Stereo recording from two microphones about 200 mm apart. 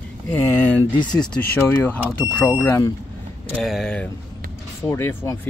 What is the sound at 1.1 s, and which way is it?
Speech, 5° left (ahead or behind).